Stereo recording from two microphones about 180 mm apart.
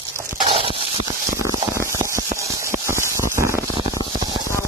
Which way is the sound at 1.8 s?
15° right (ahead or behind).